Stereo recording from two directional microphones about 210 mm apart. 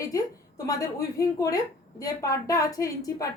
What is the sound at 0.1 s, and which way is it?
A woman's voice, 15° left (ahead or behind).